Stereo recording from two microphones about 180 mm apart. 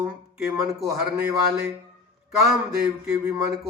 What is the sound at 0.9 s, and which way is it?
Speech, 15° right (ahead or behind).